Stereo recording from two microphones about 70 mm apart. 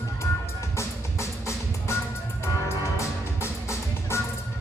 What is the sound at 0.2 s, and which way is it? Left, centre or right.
Music, left.